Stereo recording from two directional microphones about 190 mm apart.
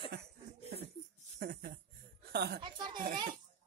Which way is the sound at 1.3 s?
55° right (ahead or behind).